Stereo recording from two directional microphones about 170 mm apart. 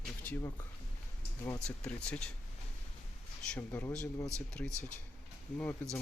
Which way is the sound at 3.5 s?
10° left (ahead or behind).